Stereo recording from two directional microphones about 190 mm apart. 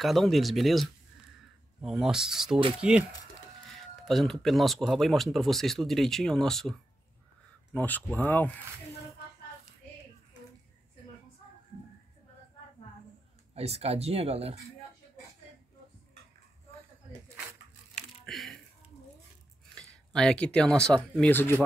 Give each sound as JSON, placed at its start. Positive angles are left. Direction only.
{"t": 0.0, "sound": "speech", "side_deg": 0}
{"t": 13.6, "sound": "speech", "side_deg": -35}
{"t": 18.2, "sound": "a sound", "side_deg": 0}
{"t": 19.7, "sound": "speech", "side_deg": 5}